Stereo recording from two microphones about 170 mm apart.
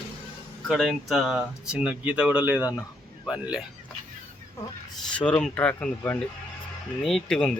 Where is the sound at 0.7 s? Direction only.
Centre (ahead or behind).